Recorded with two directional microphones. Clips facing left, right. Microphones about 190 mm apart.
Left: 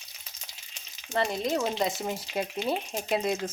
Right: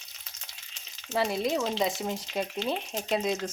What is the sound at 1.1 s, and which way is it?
Speech, 5° right (ahead or behind).